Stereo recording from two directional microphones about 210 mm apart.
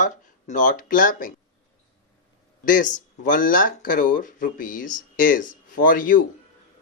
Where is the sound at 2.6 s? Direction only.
40° left (ahead or behind).